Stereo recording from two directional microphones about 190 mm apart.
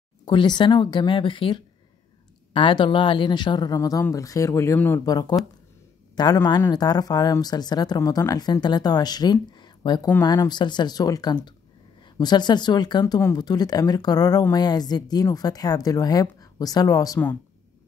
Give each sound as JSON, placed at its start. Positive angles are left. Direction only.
{"t": 0.2, "sound": "speech", "side_deg": 25}